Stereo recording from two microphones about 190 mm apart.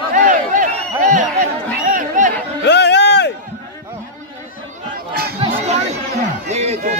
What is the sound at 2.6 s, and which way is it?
Music, 65° left (ahead or behind).